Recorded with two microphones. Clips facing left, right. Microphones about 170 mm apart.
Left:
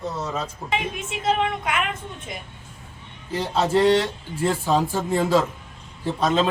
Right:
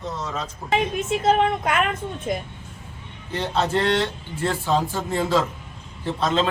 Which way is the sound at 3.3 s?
10° left (ahead or behind).